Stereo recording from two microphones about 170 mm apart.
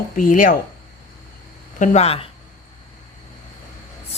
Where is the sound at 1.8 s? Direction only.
40° left (ahead or behind).